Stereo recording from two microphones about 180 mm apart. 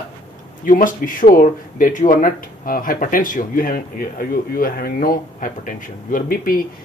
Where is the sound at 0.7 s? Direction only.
50° left (ahead or behind).